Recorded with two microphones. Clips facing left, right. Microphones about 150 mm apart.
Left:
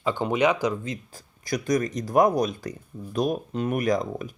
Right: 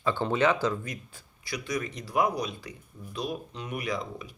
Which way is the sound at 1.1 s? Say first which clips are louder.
Left 8 dB; 40° left (ahead or behind).